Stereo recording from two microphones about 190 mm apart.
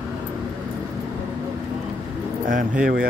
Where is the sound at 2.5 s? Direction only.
45° right (ahead or behind).